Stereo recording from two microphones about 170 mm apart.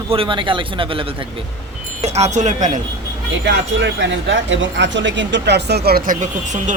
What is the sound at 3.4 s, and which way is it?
Speech, 90° right.